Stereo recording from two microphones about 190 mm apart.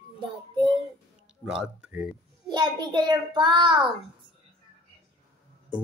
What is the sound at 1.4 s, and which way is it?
Speech, 5° right (ahead or behind).